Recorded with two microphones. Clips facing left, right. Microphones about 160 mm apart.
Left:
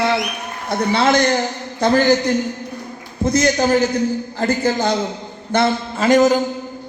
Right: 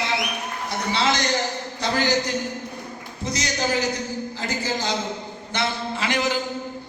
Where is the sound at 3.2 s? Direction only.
50° left (ahead or behind).